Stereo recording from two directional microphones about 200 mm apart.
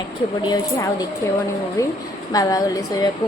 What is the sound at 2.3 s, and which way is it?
Speech, 20° left (ahead or behind).